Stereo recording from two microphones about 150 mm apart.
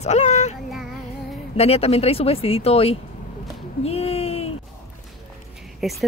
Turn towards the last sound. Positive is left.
turn(degrees=0)  # may be behind; listen again after turning